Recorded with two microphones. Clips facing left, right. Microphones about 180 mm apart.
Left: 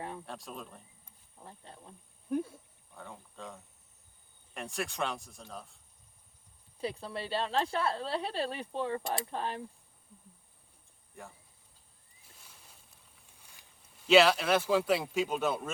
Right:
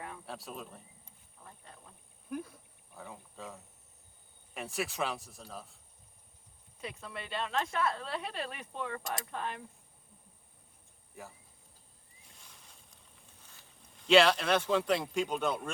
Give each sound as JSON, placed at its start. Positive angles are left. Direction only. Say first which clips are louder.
{"t": 0.3, "sound": "speech", "louder": "even", "side_deg": 0}
{"t": 1.4, "sound": "speech", "louder": "left 4 dB", "side_deg": 30}
{"t": 2.9, "sound": "speech", "louder": "even", "side_deg": -5}
{"t": 6.7, "sound": "speech", "louder": "left 6 dB", "side_deg": 35}
{"t": 11.1, "sound": "speech", "louder": "even", "side_deg": 0}
{"t": 13.4, "sound": "speech", "louder": "even", "side_deg": 10}